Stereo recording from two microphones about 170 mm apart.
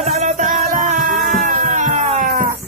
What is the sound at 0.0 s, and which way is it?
Music, 45° right (ahead or behind).